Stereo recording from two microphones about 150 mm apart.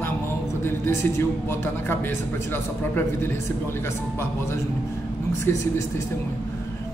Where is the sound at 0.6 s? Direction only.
15° left (ahead or behind).